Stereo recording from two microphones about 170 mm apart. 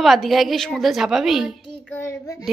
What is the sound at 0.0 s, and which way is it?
Speech, centre (ahead or behind).